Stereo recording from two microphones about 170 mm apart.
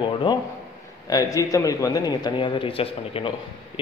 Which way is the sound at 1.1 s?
20° left (ahead or behind).